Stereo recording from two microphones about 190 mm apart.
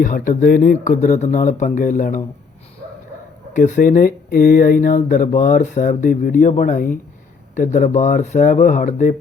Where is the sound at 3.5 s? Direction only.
40° left (ahead or behind).